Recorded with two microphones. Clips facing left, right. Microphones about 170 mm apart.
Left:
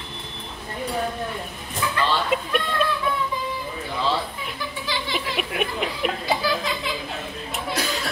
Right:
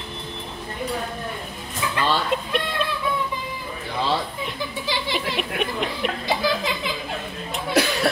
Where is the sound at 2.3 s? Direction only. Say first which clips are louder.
Left 1 dB; 5° left (ahead or behind).